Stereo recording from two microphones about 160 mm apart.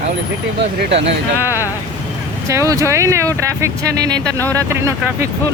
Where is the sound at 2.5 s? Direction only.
20° right (ahead or behind).